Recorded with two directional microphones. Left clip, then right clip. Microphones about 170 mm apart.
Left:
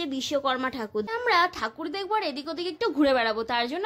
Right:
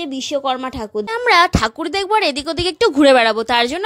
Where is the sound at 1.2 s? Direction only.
50° right (ahead or behind).